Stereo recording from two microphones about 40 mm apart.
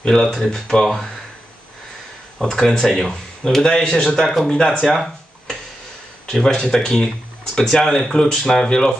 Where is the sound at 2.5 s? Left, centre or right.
Centre.